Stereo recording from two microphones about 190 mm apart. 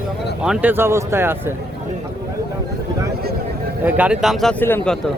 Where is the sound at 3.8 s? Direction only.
5° right (ahead or behind).